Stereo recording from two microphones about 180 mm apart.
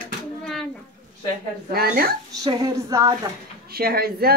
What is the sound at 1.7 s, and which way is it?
Speech, 55° right (ahead or behind).